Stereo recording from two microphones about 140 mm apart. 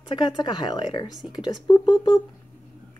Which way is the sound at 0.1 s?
30° left (ahead or behind).